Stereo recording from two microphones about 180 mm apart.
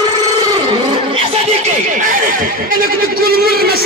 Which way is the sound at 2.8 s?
55° right (ahead or behind).